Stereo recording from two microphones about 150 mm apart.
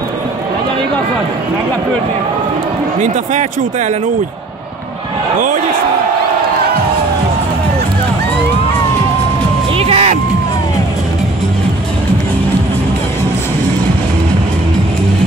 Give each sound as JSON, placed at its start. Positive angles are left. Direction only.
{"t": 9.8, "sound": "music", "side_deg": -45}